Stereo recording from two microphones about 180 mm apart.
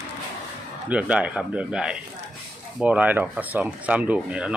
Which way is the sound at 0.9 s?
5° right (ahead or behind).